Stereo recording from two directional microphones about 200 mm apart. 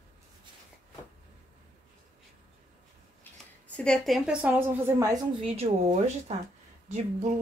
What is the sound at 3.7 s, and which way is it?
A woman's voice, 5° left (ahead or behind).